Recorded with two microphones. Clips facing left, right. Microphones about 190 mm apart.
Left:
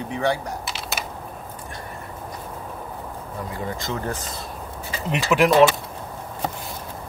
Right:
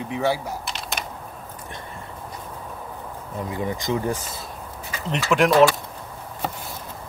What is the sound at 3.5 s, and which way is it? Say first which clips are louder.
Speech: right 4 dB; 15° right (ahead or behind).